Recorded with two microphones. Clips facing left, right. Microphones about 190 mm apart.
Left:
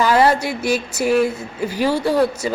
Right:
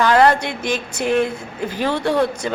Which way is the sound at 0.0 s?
5° left (ahead or behind).